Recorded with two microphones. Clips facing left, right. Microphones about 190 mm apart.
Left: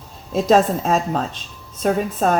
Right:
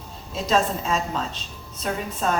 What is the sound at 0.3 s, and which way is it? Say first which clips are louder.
A woman's voice: left 7 dB; 50° left (ahead or behind).